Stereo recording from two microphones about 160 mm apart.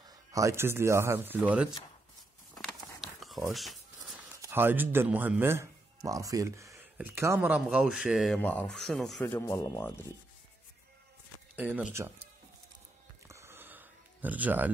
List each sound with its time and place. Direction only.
0.0 s speech: 20° right (ahead or behind)
2.5 s a sound: centre (ahead or behind)
4.4 s speech: 15° right (ahead or behind)
8.4 s speech: 10° left (ahead or behind)
9.2 s speech: 15° left (ahead or behind)
11.5 s speech: 10° right (ahead or behind)
13.3 s a sound: 15° right (ahead or behind)